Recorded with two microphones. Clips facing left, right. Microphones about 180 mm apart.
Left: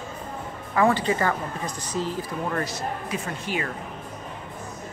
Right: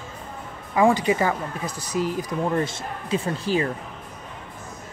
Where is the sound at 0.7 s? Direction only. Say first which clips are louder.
Right 2 dB; 15° right (ahead or behind); by 3.7 s 30° right (ahead or behind).